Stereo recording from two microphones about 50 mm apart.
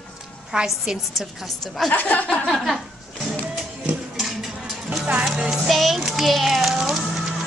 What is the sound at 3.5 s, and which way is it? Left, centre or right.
Music, centre.